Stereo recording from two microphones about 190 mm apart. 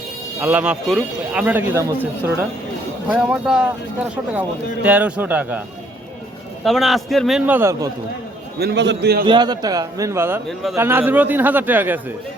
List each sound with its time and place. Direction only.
0.4 s a man's voice: 5° right (ahead or behind)
6.7 s a man's voice: centre (ahead or behind)
8.5 s a man's voice: 60° right (ahead or behind)
9.2 s a man's voice: 25° right (ahead or behind)